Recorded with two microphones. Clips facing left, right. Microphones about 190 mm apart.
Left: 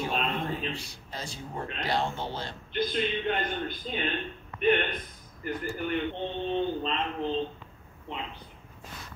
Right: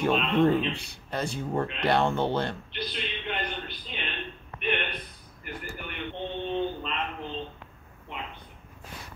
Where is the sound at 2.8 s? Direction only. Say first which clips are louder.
Left 8 dB; 45° left (ahead or behind).